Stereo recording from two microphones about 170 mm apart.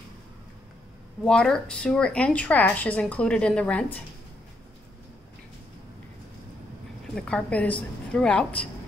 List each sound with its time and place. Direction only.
1.2 s a woman's voice: 5° left (ahead or behind)
7.2 s a woman's voice: 5° left (ahead or behind)